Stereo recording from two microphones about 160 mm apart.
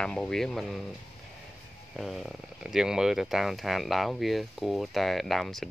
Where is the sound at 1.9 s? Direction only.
Centre (ahead or behind).